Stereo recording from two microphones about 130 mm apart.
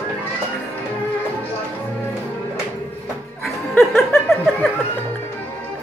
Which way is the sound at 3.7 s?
20° left (ahead or behind).